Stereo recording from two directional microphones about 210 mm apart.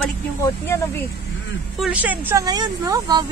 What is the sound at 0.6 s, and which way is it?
Speech, 10° left (ahead or behind).